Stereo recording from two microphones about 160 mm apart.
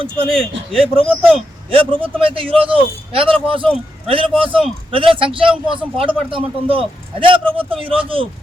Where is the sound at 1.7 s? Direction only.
35° right (ahead or behind).